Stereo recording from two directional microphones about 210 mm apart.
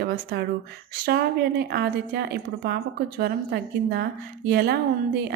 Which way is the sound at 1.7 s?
50° right (ahead or behind).